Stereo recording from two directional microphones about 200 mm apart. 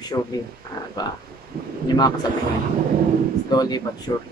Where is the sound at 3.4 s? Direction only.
20° left (ahead or behind).